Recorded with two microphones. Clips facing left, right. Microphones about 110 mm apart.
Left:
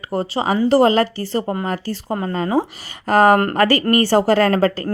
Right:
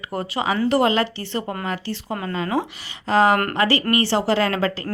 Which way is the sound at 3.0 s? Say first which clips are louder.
Left 4 dB; 50° left (ahead or behind).